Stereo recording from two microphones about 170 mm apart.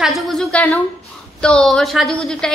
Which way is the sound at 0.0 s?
Centre (ahead or behind).